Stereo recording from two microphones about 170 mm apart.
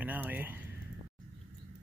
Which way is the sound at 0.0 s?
10° right (ahead or behind).